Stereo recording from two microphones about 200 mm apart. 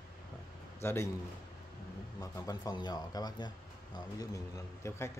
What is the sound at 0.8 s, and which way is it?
Speech, 15° left (ahead or behind).